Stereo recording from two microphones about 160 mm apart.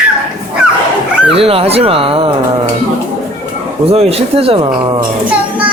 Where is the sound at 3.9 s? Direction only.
40° right (ahead or behind).